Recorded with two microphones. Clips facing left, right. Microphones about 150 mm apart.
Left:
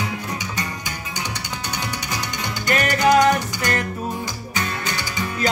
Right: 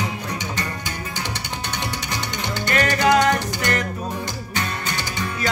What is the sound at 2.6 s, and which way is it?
Music, 25° right (ahead or behind).